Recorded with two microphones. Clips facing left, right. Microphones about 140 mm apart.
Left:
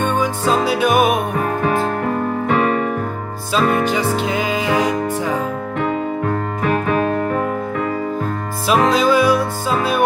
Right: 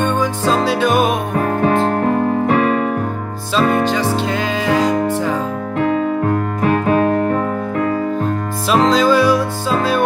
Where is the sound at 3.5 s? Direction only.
10° left (ahead or behind).